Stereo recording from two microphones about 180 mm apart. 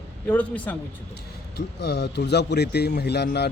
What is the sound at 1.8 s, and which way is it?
A man's voice, 70° left (ahead or behind).